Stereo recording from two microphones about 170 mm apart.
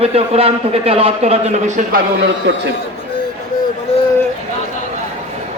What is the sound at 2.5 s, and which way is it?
Speech, 90° right.